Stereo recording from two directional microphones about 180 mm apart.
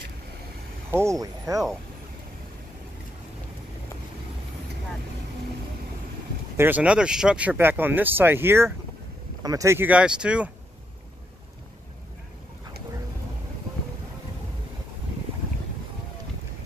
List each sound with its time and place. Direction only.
0.9 s speech: 15° right (ahead or behind)
6.5 s speech: 10° right (ahead or behind)